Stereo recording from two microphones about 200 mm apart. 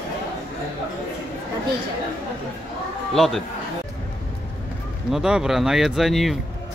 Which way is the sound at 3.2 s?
Centre (ahead or behind).